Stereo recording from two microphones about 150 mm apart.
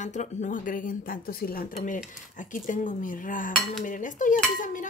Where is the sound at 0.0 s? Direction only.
50° left (ahead or behind).